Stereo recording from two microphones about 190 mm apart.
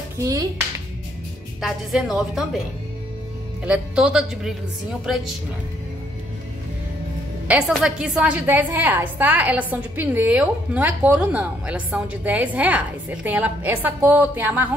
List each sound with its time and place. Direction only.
0.2 s a woman's voice: 20° right (ahead or behind)
1.6 s a woman's voice: centre (ahead or behind)
3.6 s a woman's voice: 5° right (ahead or behind)
7.4 s a woman's voice: 5° right (ahead or behind)